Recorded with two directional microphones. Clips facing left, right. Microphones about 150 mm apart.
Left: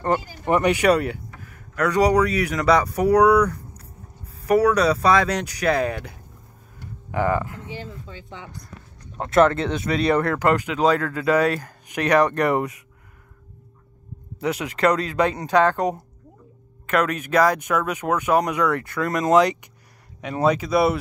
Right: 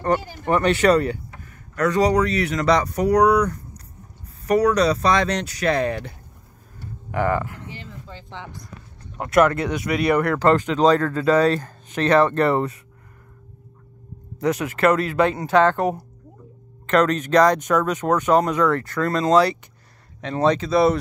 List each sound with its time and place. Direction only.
0.5 s speech: 15° left (ahead or behind)
4.6 s speech: 5° left (ahead or behind)
7.1 s speech: 20° left (ahead or behind)
9.2 s speech: 25° left (ahead or behind)
14.4 s speech: 15° left (ahead or behind)